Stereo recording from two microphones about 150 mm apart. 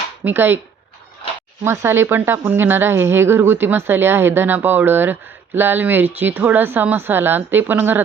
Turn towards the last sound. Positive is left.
turn(degrees=-15)  # may be behind; listen again after turning